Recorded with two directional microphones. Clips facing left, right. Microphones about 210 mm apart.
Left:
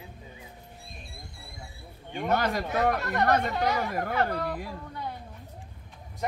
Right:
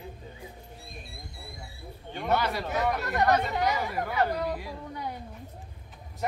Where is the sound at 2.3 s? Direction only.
45° left (ahead or behind).